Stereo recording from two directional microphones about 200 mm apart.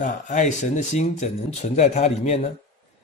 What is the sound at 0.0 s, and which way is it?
Speech, 40° left (ahead or behind).